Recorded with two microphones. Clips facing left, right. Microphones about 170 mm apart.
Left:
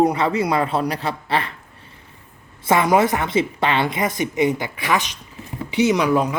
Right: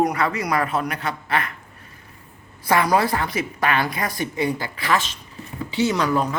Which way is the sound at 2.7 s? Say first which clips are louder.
Left 3 dB; 20° left (ahead or behind).